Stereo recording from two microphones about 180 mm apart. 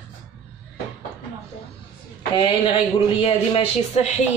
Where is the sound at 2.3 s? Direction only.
30° left (ahead or behind).